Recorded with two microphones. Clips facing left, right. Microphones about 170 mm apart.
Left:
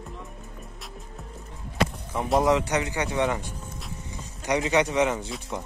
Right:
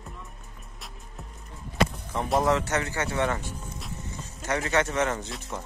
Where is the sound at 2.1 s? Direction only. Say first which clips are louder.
Left 2 dB; centre (ahead or behind).